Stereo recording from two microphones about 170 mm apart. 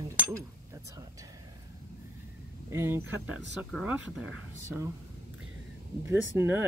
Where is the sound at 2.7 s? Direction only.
15° right (ahead or behind).